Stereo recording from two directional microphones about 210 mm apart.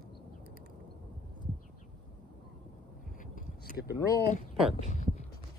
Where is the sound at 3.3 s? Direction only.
45° left (ahead or behind).